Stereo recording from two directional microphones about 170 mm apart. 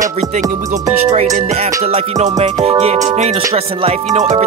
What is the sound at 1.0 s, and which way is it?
Speech, 45° right (ahead or behind).